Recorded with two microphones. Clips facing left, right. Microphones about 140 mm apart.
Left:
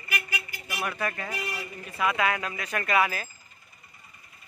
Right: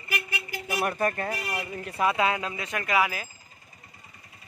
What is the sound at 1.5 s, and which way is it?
Speech, 65° right (ahead or behind).